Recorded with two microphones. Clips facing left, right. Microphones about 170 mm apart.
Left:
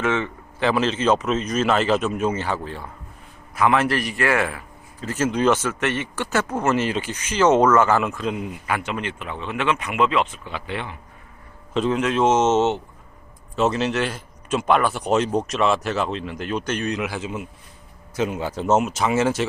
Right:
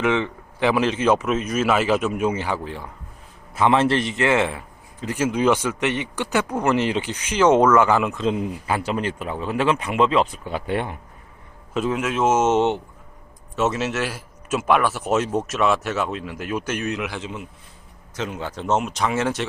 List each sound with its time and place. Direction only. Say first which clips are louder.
0.0 s speech: right 2 dB; 15° right (ahead or behind)
3.5 s a man's voice: right 2 dB; 25° right (ahead or behind); by 10.9 s 45° right (ahead or behind)
11.7 s speech: left 2 dB; 5° right (ahead or behind)
13.6 s a man's voice: left 2 dB; 5° right (ahead or behind)